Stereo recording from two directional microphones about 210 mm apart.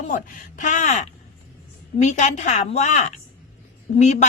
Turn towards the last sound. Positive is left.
turn(degrees=35)  # may be behind; listen again after turning